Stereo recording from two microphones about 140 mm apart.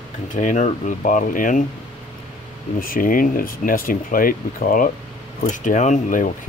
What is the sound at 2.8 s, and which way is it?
Speech, 85° left.